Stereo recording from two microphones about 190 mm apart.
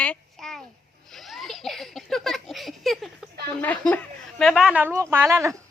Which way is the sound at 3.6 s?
10° left (ahead or behind).